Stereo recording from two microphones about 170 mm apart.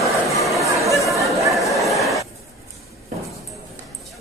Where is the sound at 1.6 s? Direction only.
Centre (ahead or behind).